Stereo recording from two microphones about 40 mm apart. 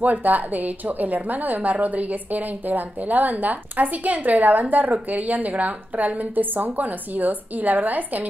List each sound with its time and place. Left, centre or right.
0.0 s a woman's voice: right